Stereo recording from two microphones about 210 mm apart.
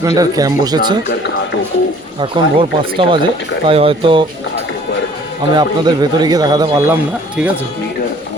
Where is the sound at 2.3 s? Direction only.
25° right (ahead or behind).